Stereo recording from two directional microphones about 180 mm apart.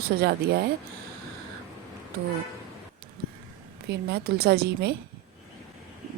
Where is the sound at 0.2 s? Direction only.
60° right (ahead or behind).